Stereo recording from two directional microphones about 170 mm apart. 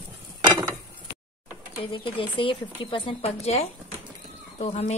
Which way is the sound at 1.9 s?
30° left (ahead or behind).